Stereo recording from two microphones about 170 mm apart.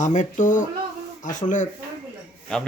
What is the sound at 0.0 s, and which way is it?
Speech, 45° left (ahead or behind).